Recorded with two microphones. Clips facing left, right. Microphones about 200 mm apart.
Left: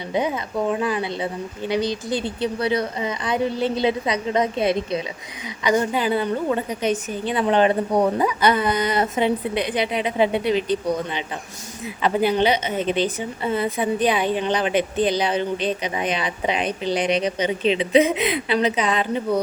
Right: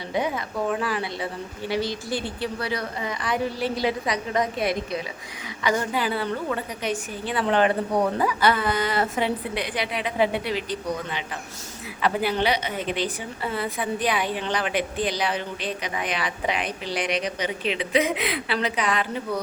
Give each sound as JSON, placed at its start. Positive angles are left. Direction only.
{"t": 0.1, "sound": "a woman's voice", "side_deg": 20}